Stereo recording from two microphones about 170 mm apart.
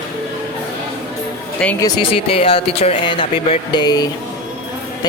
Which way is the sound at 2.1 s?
35° left (ahead or behind).